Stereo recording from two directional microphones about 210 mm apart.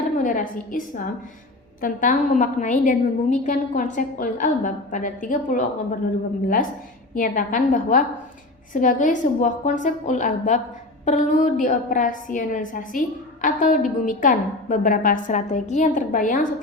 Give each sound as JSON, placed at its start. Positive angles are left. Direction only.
{"t": 0.2, "sound": "a woman's voice", "side_deg": 40}
{"t": 7.1, "sound": "a woman's voice", "side_deg": 40}